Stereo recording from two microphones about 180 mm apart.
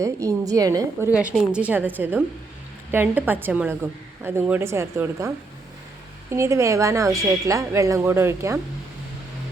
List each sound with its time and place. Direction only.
0.0 s a woman's voice: 15° right (ahead or behind)
6.3 s a woman's voice: 15° right (ahead or behind)